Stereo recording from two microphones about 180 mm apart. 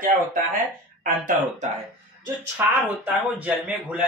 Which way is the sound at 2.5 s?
10° right (ahead or behind).